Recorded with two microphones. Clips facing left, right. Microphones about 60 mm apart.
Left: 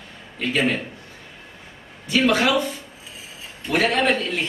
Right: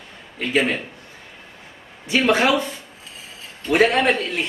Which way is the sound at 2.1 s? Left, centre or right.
Right.